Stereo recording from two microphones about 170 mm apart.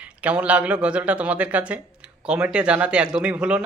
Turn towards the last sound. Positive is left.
turn(degrees=-5)  # may be behind; listen again after turning